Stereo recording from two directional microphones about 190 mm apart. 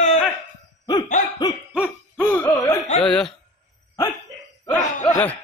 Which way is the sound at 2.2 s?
10° left (ahead or behind).